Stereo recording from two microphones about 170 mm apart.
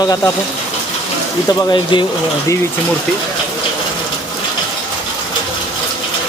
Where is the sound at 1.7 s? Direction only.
25° left (ahead or behind).